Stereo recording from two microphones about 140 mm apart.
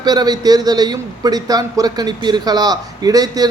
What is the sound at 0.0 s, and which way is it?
A man's voice, 30° right (ahead or behind).